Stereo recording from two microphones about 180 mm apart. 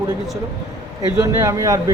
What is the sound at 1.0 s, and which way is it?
Speech, 15° right (ahead or behind).